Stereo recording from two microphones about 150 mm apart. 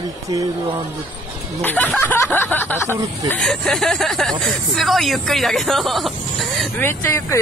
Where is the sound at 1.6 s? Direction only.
10° left (ahead or behind).